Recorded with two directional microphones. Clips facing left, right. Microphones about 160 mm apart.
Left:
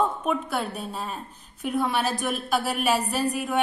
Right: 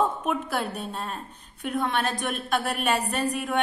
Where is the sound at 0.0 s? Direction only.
Centre (ahead or behind).